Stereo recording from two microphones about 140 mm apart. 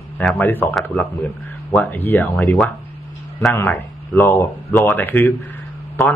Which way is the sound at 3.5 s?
15° left (ahead or behind).